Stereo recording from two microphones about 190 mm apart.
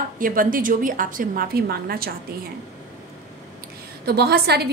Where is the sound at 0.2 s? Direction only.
45° right (ahead or behind).